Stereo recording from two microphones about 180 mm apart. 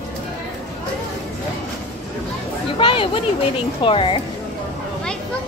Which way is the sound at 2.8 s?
25° left (ahead or behind).